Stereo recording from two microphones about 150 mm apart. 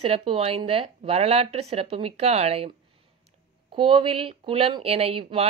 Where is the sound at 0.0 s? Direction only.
40° right (ahead or behind).